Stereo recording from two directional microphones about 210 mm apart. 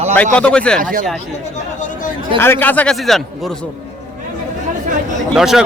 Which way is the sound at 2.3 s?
10° left (ahead or behind).